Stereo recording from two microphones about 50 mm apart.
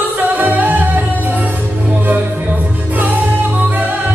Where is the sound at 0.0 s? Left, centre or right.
Right.